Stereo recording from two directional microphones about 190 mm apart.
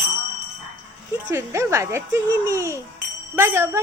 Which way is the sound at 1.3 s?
15° right (ahead or behind).